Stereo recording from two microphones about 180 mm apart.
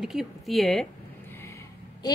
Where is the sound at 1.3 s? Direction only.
15° left (ahead or behind).